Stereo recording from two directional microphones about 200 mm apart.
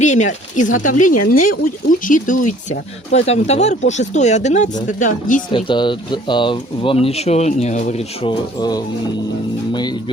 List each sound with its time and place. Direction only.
0.0 s speech: 35° left (ahead or behind)
5.5 s speech: 25° left (ahead or behind)